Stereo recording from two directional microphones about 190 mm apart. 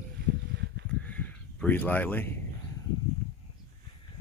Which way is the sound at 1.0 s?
5° left (ahead or behind).